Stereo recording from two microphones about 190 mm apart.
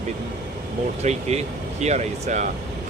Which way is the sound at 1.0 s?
35° right (ahead or behind).